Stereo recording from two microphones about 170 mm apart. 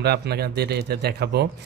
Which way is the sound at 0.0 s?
70° right (ahead or behind).